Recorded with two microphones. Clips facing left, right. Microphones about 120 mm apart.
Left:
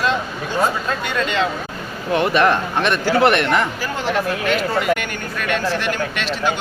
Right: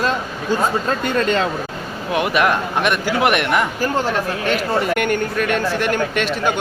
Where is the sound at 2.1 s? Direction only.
10° right (ahead or behind).